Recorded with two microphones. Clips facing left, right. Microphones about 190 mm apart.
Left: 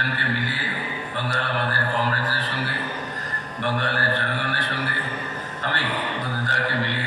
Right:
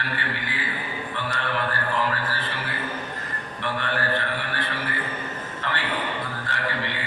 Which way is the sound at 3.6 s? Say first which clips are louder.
Left 4 dB; 40° left (ahead or behind).